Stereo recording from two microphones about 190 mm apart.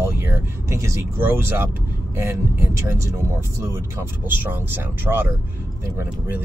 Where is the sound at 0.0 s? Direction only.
10° right (ahead or behind).